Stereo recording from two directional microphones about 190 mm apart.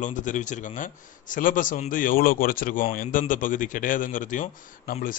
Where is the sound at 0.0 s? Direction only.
40° left (ahead or behind).